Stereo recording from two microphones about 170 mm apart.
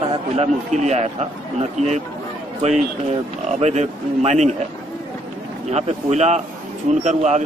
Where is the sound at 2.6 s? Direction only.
40° right (ahead or behind).